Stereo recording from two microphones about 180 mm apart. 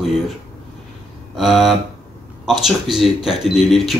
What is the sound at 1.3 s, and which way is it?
Speech, centre (ahead or behind).